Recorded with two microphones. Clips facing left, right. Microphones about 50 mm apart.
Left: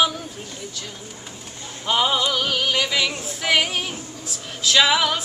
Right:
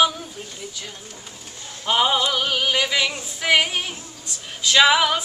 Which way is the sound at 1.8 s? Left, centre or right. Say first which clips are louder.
Right 1 dB; centre.